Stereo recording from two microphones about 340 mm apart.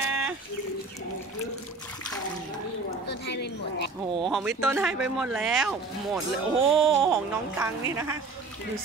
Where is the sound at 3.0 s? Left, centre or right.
Left.